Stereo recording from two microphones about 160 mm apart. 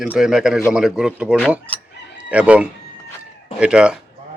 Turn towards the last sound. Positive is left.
turn(degrees=-5)  # may be behind; listen again after turning